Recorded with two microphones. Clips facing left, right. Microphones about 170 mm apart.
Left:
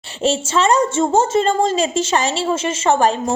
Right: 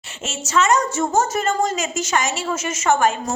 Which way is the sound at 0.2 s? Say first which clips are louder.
Left 4 dB; 30° left (ahead or behind).